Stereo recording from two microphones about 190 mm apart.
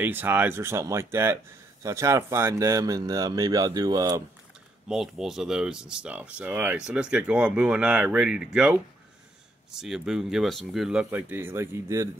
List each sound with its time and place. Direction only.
0.0 s a man's voice: 10° right (ahead or behind)
4.8 s speech: centre (ahead or behind)